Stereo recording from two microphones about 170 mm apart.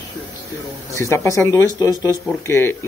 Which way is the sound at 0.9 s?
15° left (ahead or behind).